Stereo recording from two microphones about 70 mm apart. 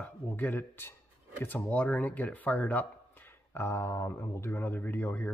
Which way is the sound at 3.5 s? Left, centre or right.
Left.